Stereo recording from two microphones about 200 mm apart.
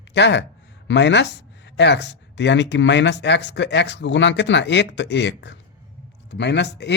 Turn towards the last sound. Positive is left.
turn(degrees=60)  # may be behind; listen again after turning